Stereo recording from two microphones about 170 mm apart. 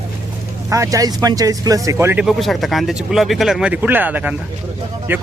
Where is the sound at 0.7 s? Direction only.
20° right (ahead or behind).